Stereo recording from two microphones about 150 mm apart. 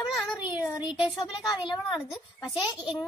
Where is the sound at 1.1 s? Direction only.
30° left (ahead or behind).